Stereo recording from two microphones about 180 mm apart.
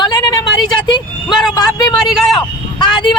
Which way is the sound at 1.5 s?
20° left (ahead or behind).